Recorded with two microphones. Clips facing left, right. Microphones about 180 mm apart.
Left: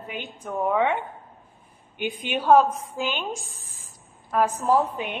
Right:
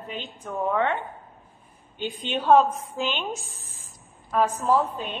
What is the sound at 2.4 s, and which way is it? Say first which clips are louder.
Speech: left 1 dB; centre (ahead or behind).